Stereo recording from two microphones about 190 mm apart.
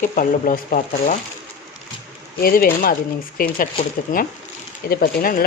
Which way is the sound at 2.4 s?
50° left (ahead or behind).